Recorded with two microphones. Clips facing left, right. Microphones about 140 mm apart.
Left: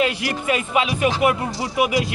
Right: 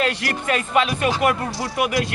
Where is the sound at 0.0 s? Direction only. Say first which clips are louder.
Left 1 dB; 10° left (ahead or behind).